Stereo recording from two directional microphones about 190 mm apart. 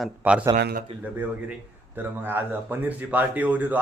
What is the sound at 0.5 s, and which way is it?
Speech, 55° right (ahead or behind).